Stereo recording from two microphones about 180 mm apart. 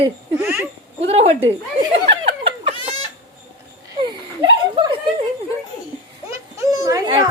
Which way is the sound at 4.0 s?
25° right (ahead or behind).